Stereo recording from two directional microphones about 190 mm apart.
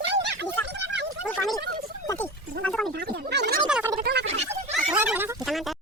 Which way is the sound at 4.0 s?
60° right (ahead or behind).